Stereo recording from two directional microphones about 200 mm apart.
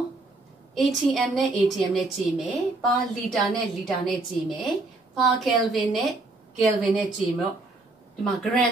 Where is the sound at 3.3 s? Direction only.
Centre (ahead or behind).